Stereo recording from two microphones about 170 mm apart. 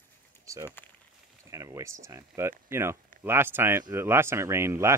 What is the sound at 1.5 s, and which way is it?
Speech, 20° right (ahead or behind).